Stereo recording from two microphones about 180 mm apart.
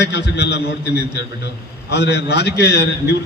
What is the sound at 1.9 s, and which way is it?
A man's voice, 65° left (ahead or behind).